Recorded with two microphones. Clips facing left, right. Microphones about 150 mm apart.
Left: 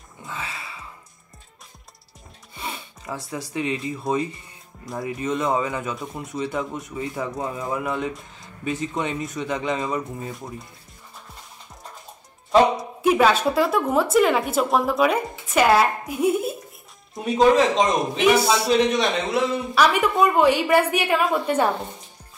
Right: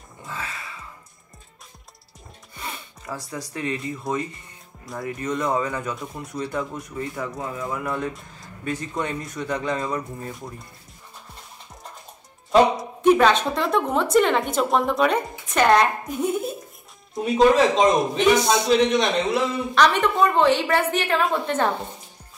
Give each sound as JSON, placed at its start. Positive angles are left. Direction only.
{"t": 0.3, "sound": "music", "side_deg": 25}
{"t": 2.5, "sound": "music", "side_deg": 25}
{"t": 3.3, "sound": "a man's voice", "side_deg": 25}
{"t": 12.4, "sound": "a man's voice", "side_deg": 0}